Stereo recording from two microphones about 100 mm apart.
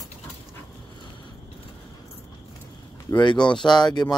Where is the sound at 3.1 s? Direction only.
50° left (ahead or behind).